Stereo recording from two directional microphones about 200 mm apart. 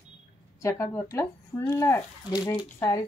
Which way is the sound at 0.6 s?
15° left (ahead or behind).